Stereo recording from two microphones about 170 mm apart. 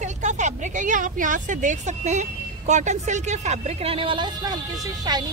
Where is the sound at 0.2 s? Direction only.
45° right (ahead or behind).